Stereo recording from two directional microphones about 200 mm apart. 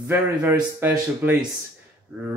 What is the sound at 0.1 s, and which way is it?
Speech, 10° right (ahead or behind).